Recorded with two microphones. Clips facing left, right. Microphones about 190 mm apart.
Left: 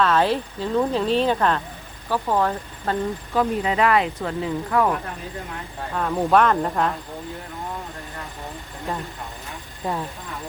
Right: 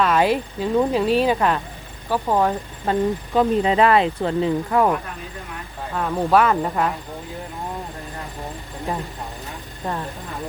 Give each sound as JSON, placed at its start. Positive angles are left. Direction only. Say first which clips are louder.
{"t": 0.0, "sound": "speech", "louder": "right 1 dB", "side_deg": -10}
{"t": 5.9, "sound": "speech", "louder": "right 1 dB", "side_deg": 0}
{"t": 8.9, "sound": "speech", "louder": "right 2 dB", "side_deg": -15}